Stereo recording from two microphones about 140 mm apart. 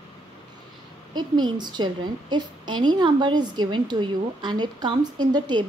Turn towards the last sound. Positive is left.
turn(degrees=-30)  # may be behind; listen again after turning